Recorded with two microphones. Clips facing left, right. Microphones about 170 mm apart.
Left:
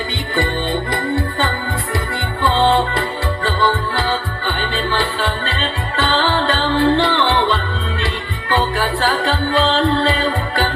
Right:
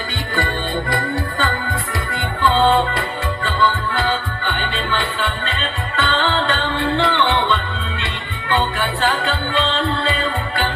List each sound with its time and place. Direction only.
0.9 s music: 25° left (ahead or behind)
2.9 s music: 35° left (ahead or behind)